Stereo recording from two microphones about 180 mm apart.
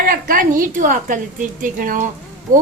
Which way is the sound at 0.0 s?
50° right (ahead or behind).